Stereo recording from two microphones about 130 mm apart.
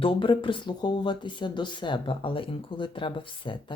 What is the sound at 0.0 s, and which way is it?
Speech, 40° left (ahead or behind).